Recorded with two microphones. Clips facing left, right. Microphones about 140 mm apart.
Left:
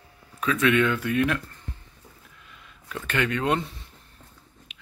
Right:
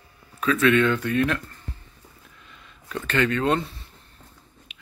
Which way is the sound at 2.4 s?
5° left (ahead or behind).